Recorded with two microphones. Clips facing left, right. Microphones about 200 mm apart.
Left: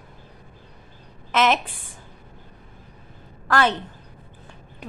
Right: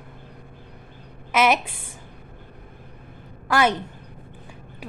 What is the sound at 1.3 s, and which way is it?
Speech, 10° right (ahead or behind).